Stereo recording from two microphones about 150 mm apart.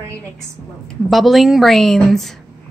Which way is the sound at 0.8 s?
Centre (ahead or behind).